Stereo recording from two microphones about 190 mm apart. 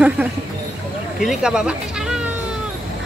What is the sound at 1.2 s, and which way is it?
Speech, 5° right (ahead or behind).